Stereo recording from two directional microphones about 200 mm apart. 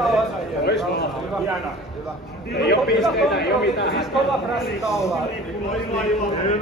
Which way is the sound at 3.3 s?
55° left (ahead or behind).